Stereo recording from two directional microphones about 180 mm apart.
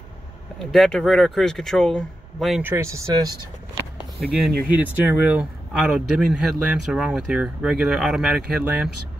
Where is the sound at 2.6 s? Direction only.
15° right (ahead or behind).